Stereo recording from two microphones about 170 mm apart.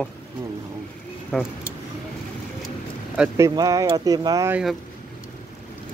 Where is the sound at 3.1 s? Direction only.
15° right (ahead or behind).